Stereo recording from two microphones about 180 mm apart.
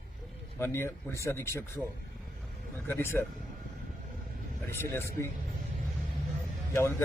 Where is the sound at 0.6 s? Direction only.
15° left (ahead or behind).